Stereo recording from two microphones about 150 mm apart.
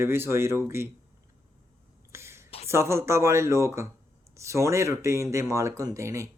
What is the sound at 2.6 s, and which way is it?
Speech, 15° right (ahead or behind).